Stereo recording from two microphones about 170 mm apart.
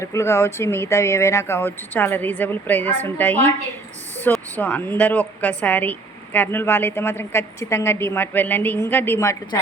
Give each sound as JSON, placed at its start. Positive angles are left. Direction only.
{"t": 0.0, "sound": "a woman's voice", "side_deg": 15}